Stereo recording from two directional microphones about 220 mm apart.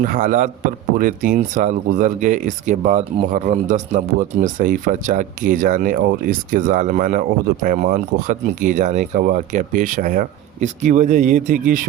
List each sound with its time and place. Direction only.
0.0 s speech: 35° right (ahead or behind)